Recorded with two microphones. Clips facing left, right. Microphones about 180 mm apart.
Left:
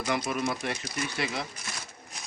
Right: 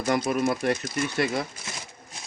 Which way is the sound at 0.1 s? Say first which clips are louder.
Right 6 dB; 45° right (ahead or behind).